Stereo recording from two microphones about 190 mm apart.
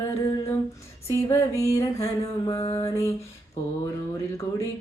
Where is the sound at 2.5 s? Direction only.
20° left (ahead or behind).